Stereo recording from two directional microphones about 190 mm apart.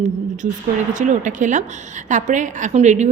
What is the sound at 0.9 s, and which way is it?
A woman's voice, 40° right (ahead or behind).